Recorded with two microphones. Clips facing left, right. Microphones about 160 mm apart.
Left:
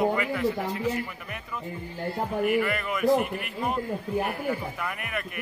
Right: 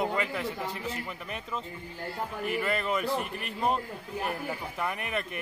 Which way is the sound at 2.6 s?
30° right (ahead or behind).